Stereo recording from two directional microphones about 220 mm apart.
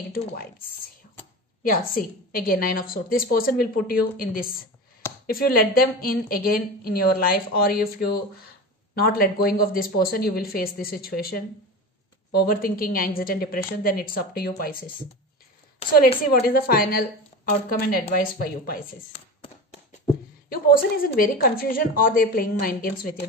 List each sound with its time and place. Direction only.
1.6 s a woman's voice: 40° left (ahead or behind)
16.4 s a woman's voice: 40° left (ahead or behind)
19.8 s a sound: 30° left (ahead or behind)
20.4 s a woman's voice: 40° left (ahead or behind)